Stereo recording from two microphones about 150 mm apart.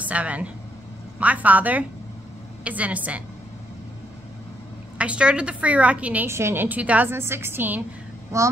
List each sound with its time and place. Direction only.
0.0 s a woman's voice: 10° right (ahead or behind)
4.9 s a woman's voice: 10° right (ahead or behind)